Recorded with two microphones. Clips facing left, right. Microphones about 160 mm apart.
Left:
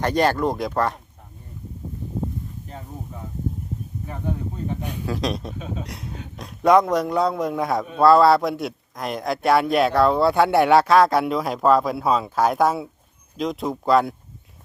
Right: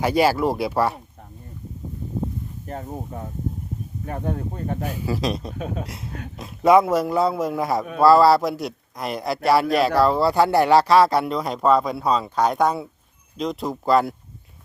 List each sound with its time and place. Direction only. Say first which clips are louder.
0.0 s speech: right 1 dB; 5° right (ahead or behind)
4.0 s speech: right 3 dB; 60° right (ahead or behind)
4.8 s speech: right 2 dB; 5° right (ahead or behind)
5.5 s speech: right 3 dB; 55° right (ahead or behind)
5.8 s speech: right 1 dB; centre (ahead or behind)